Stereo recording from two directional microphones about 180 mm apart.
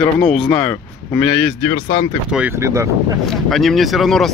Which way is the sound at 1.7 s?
35° left (ahead or behind).